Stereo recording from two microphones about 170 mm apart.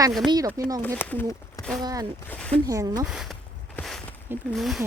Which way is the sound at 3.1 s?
Centre (ahead or behind).